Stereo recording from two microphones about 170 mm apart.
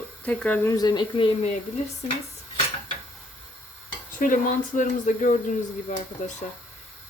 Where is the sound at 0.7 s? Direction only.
25° left (ahead or behind).